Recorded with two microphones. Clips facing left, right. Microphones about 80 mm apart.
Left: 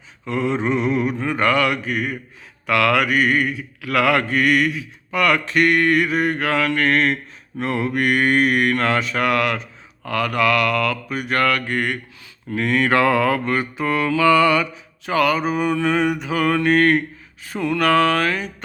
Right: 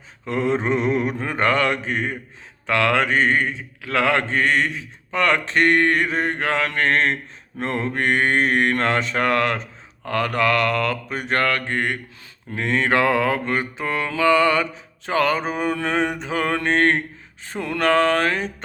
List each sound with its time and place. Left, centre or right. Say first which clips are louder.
0.3 s mantra: even; right